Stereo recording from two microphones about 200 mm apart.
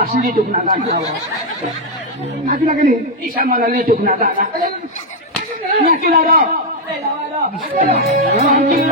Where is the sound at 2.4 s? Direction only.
40° right (ahead or behind).